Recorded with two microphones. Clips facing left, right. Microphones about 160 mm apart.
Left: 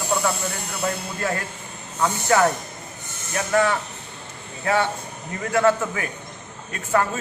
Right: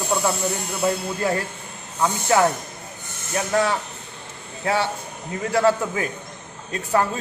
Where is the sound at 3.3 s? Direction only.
15° right (ahead or behind).